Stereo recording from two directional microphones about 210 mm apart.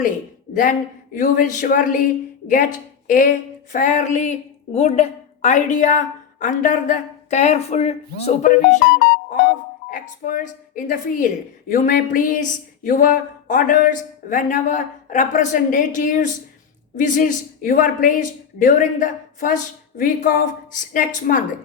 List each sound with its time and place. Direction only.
0.5 s speech: 40° left (ahead or behind)
9.9 s speech: 40° left (ahead or behind)